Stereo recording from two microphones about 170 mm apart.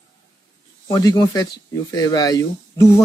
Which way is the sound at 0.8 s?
20° left (ahead or behind).